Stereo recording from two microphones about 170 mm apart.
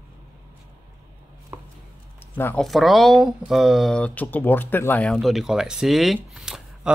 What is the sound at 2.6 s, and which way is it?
Speech, centre (ahead or behind).